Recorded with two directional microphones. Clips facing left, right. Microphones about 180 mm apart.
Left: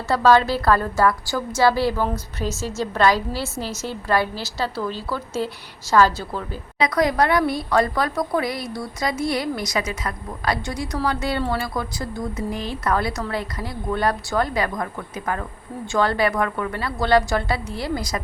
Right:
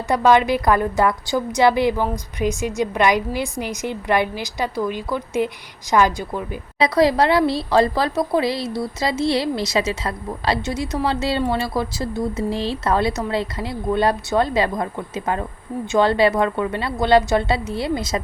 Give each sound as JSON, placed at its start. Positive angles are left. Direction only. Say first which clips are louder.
{"t": 0.1, "sound": "a woman's voice", "louder": "right 1 dB", "side_deg": -15}
{"t": 6.7, "sound": "speech", "louder": "right 3 dB", "side_deg": -30}